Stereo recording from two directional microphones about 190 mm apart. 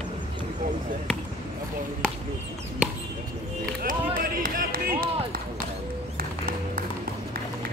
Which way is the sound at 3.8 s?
45° right (ahead or behind).